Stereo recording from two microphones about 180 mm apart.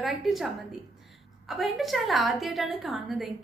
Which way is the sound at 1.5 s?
Centre (ahead or behind).